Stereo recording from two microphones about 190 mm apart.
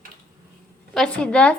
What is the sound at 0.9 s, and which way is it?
Speech, 5° left (ahead or behind).